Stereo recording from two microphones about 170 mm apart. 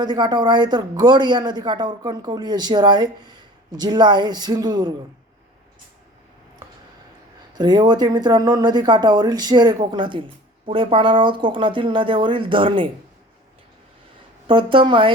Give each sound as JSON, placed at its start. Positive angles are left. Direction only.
{"t": 0.0, "sound": "speech", "side_deg": -25}
{"t": 7.5, "sound": "speech", "side_deg": -25}
{"t": 14.4, "sound": "speech", "side_deg": -30}